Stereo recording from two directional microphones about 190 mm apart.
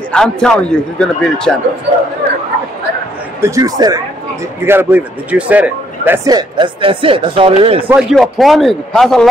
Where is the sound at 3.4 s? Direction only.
20° right (ahead or behind).